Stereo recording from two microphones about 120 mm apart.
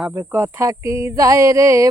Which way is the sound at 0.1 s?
20° right (ahead or behind).